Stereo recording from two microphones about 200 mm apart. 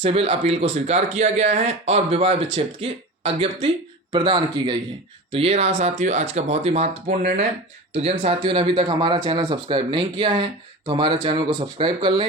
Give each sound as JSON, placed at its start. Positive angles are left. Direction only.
{"t": 0.0, "sound": "speech", "side_deg": -30}
{"t": 7.9, "sound": "speech", "side_deg": -30}